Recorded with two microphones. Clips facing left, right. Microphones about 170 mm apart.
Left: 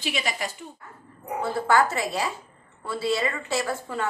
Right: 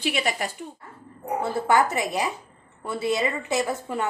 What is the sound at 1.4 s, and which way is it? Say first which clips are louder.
A woman's voice: even; 20° right (ahead or behind).